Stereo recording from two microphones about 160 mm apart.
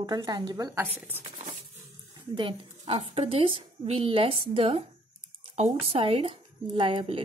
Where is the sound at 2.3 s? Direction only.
30° right (ahead or behind).